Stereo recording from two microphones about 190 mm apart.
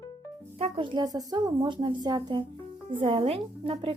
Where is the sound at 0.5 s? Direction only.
30° right (ahead or behind).